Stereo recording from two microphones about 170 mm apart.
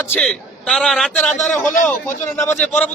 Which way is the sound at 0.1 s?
5° left (ahead or behind).